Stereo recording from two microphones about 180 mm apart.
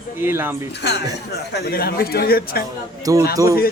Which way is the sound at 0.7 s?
70° left (ahead or behind).